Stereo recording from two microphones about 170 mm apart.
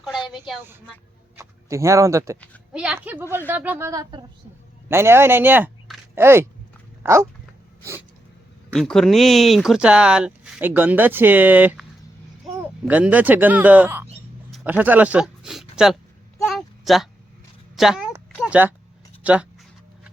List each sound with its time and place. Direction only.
0.0 s a sound: centre (ahead or behind)
1.4 s speech: 15° right (ahead or behind)
2.7 s a woman's voice: 5° right (ahead or behind)
7.0 s dog: 15° right (ahead or behind)
8.7 s speech: 5° left (ahead or behind)
16.5 s a sound: centre (ahead or behind)
17.7 s speech: centre (ahead or behind)
18.3 s a sound: 5° right (ahead or behind)
19.2 s speech: 5° right (ahead or behind)